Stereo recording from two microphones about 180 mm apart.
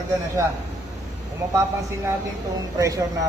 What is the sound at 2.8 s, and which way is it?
Speech, 15° right (ahead or behind).